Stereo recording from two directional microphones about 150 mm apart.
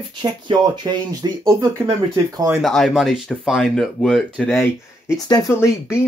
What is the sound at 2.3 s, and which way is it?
Speech, 15° right (ahead or behind).